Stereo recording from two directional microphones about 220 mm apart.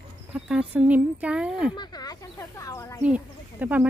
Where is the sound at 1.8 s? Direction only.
20° left (ahead or behind).